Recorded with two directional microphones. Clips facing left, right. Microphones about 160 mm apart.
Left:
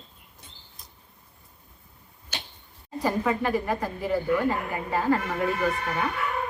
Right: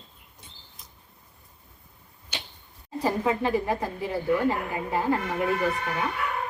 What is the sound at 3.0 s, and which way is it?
Speech, 20° right (ahead or behind).